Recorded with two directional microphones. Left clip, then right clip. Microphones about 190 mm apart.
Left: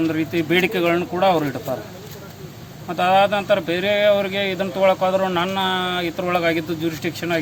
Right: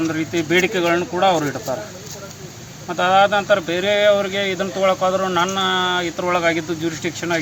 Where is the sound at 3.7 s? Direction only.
55° left (ahead or behind).